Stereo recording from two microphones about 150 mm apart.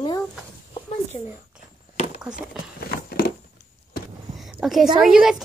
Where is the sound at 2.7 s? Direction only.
90° left.